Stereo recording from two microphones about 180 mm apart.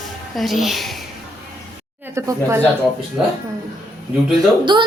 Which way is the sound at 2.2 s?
15° right (ahead or behind).